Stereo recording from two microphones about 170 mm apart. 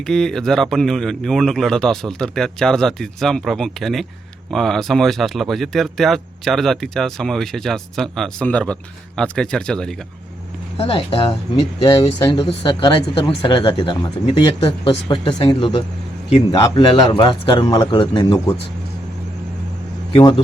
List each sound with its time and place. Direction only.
0.1 s speech: 5° left (ahead or behind)
10.8 s speech: 35° left (ahead or behind)
20.1 s speech: 30° left (ahead or behind)